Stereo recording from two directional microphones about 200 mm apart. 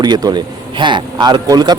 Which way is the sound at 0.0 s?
20° right (ahead or behind).